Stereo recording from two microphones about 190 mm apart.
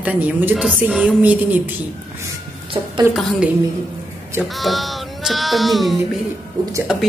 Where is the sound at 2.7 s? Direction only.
25° right (ahead or behind).